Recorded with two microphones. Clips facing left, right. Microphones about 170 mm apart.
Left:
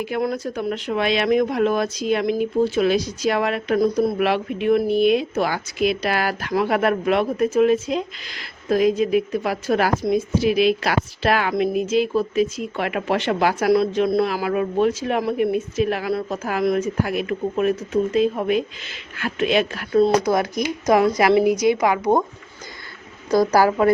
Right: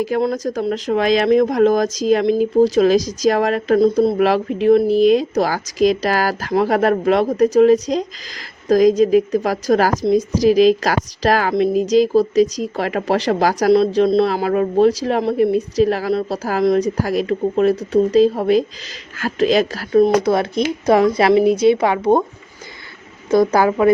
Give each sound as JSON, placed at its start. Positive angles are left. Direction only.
{"t": 0.3, "sound": "a woman's voice", "side_deg": -40}
{"t": 3.8, "sound": "speech", "side_deg": -25}
{"t": 4.2, "sound": "a woman's voice", "side_deg": -35}
{"t": 13.7, "sound": "a woman's voice", "side_deg": -25}
{"t": 19.9, "sound": "speech", "side_deg": -25}
{"t": 23.3, "sound": "speech", "side_deg": -25}